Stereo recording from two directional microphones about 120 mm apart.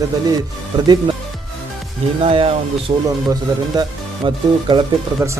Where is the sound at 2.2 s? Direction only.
50° right (ahead or behind).